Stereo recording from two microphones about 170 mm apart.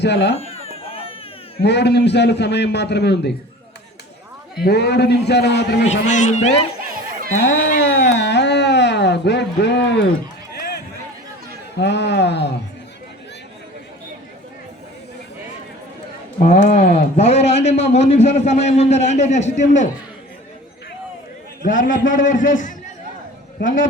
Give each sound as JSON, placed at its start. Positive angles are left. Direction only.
{"t": 0.0, "sound": "speech", "side_deg": 90}
{"t": 0.3, "sound": "baby cry", "side_deg": 35}
{"t": 1.5, "sound": "a man's voice", "side_deg": 80}
{"t": 4.6, "sound": "a man's voice", "side_deg": 80}
{"t": 5.9, "sound": "a man's voice", "side_deg": 45}
{"t": 7.8, "sound": "speech", "side_deg": 90}
{"t": 10.5, "sound": "run", "side_deg": 70}
{"t": 11.8, "sound": "a man's voice", "side_deg": 90}
{"t": 16.4, "sound": "a man's voice", "side_deg": 40}
{"t": 21.6, "sound": "a man's voice", "side_deg": 50}